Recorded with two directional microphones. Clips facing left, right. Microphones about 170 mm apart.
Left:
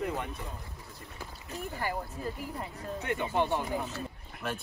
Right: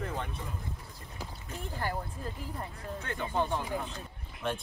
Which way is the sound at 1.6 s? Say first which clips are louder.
Left 1 dB; 5° left (ahead or behind).